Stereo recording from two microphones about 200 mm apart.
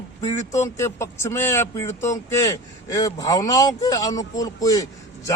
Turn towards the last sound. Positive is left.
turn(degrees=15)  # may be behind; listen again after turning